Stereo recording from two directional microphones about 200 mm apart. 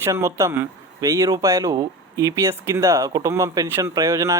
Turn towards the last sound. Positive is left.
turn(degrees=-15)  # may be behind; listen again after turning